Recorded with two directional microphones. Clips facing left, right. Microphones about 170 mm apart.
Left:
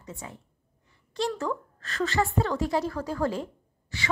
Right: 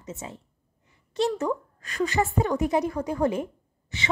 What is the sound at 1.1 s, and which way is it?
A woman's voice, 20° right (ahead or behind).